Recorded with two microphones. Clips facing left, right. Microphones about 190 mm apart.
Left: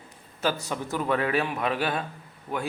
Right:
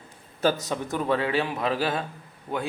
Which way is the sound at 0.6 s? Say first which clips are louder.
Right 2 dB; 20° right (ahead or behind).